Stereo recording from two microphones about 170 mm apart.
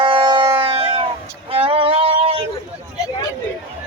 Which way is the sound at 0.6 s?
35° right (ahead or behind).